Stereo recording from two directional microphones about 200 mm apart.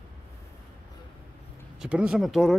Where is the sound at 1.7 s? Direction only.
5° right (ahead or behind).